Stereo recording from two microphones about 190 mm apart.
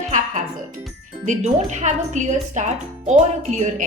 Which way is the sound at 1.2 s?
40° right (ahead or behind).